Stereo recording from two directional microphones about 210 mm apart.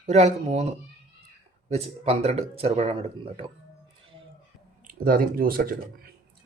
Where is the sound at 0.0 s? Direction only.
30° right (ahead or behind).